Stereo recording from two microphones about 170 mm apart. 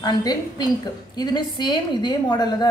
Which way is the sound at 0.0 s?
25° left (ahead or behind).